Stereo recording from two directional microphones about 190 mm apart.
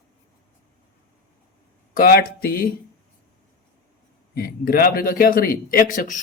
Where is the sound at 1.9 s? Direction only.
50° left (ahead or behind).